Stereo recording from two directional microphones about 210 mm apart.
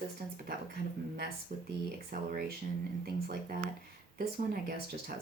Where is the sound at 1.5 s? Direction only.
50° right (ahead or behind).